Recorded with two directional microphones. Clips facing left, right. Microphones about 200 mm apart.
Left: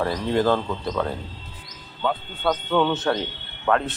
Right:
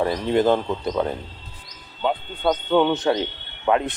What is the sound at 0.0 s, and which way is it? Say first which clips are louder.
Speech: right 2 dB; 15° right (ahead or behind).